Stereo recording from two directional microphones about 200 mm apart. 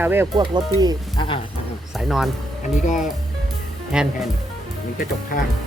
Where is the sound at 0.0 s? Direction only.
10° right (ahead or behind).